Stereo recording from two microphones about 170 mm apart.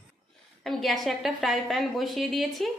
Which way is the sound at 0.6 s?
Centre (ahead or behind).